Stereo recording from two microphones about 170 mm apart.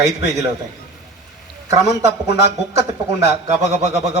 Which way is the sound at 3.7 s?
40° right (ahead or behind).